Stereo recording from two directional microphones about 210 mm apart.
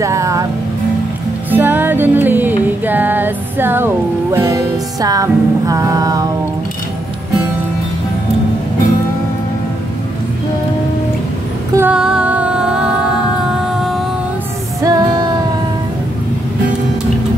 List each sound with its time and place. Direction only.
0.0 s music: 15° right (ahead or behind)
1.5 s music: 10° right (ahead or behind)
11.7 s music: 5° right (ahead or behind)
13.7 s music: centre (ahead or behind)
14.8 s music: 20° right (ahead or behind)